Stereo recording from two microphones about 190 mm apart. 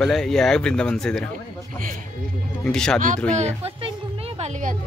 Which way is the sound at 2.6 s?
5° left (ahead or behind).